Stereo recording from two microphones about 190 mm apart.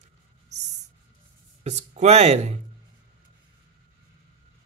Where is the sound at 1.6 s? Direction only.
35° right (ahead or behind).